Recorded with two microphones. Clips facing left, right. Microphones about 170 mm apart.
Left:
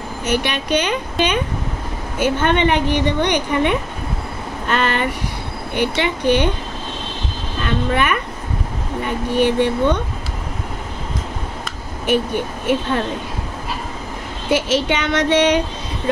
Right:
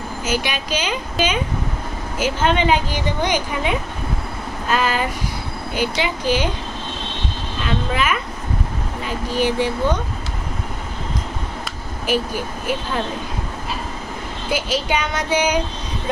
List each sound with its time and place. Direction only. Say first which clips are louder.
0.2 s a woman's voice: left 3 dB; 65° left (ahead or behind)
4.6 s a sound: left 1 dB; 65° left (ahead or behind)
5.8 s a woman's voice: left 3 dB; 65° left (ahead or behind)
7.6 s a woman's voice: left 3 dB; 60° left (ahead or behind)
14.9 s child singing: left 4 dB; 75° left (ahead or behind)